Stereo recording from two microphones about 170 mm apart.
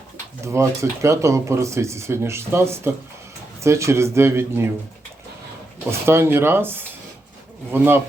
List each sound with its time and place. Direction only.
0.4 s speech: 15° right (ahead or behind)
6.1 s speech: 15° right (ahead or behind)